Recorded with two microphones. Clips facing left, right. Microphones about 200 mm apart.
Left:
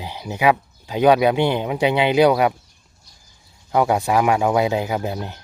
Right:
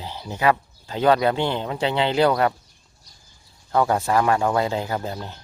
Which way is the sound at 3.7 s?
15° left (ahead or behind).